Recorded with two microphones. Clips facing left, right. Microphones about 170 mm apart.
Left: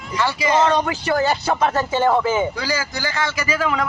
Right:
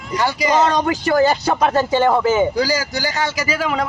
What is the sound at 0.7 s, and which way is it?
Speech, 40° right (ahead or behind).